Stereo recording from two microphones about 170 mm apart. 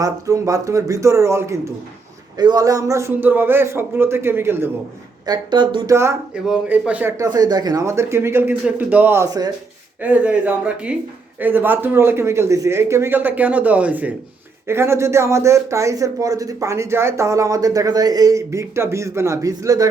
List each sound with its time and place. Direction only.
0.0 s speech: 20° right (ahead or behind)
5.2 s speech: 25° right (ahead or behind); by 7.1 s 10° right (ahead or behind)
7.2 s speech: 20° right (ahead or behind)
10.0 s speech: 10° right (ahead or behind)